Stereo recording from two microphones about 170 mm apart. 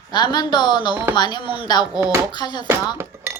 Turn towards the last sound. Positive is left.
turn(degrees=-15)  # may be behind; listen again after turning